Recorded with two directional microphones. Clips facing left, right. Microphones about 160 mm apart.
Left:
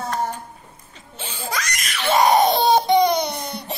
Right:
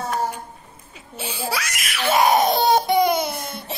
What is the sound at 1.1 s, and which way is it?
Crying, 10° right (ahead or behind).